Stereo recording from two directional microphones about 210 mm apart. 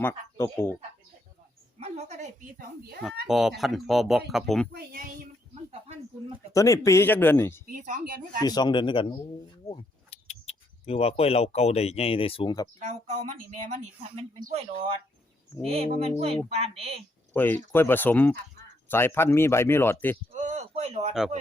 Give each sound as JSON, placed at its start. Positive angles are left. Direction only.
{"t": 0.0, "sound": "speech", "side_deg": 10}
{"t": 1.8, "sound": "a woman's voice", "side_deg": -30}
{"t": 3.0, "sound": "speech", "side_deg": 0}
{"t": 4.7, "sound": "a child's voice", "side_deg": -45}
{"t": 6.5, "sound": "speech", "side_deg": 15}
{"t": 7.7, "sound": "a woman's voice", "side_deg": -40}
{"t": 8.4, "sound": "speech", "side_deg": 20}
{"t": 12.8, "sound": "a woman's voice", "side_deg": -35}
{"t": 17.3, "sound": "speech", "side_deg": 10}
{"t": 20.3, "sound": "speech", "side_deg": -35}